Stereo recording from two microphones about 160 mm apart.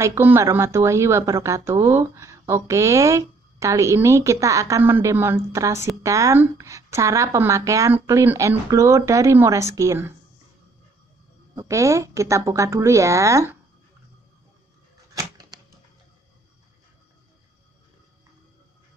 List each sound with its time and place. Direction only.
0.0 s speech: 15° right (ahead or behind)
11.5 s speech: 20° right (ahead or behind)
15.1 s typewriter: 25° right (ahead or behind)